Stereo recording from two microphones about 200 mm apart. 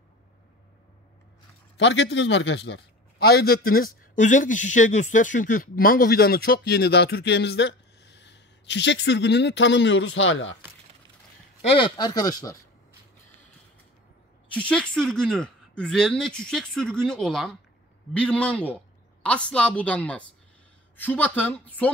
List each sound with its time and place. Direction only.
1.8 s a man's voice: 65° left (ahead or behind)
11.6 s speech: 25° left (ahead or behind)
14.5 s a woman's voice: 5° left (ahead or behind)